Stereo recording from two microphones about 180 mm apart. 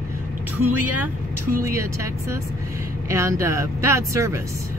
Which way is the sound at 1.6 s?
15° right (ahead or behind).